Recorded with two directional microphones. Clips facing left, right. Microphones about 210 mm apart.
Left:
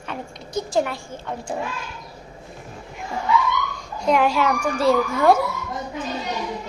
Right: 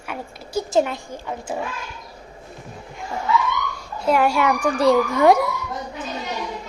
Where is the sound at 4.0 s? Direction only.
5° right (ahead or behind).